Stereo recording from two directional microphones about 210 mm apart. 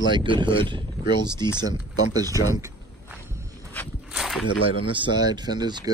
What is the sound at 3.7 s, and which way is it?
Walk, 10° left (ahead or behind).